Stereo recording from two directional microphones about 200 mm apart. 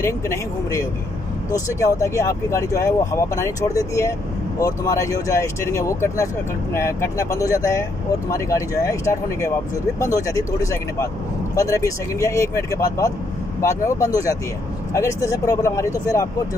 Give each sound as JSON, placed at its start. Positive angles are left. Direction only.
{"t": 0.0, "sound": "speech", "side_deg": 15}